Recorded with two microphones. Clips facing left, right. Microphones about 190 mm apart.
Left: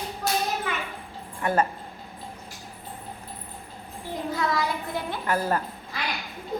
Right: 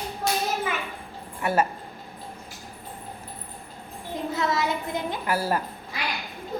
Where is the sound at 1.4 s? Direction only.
10° right (ahead or behind).